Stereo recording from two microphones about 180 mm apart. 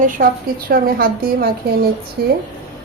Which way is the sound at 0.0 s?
50° right (ahead or behind).